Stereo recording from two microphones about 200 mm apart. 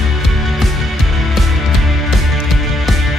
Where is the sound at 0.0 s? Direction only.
Centre (ahead or behind).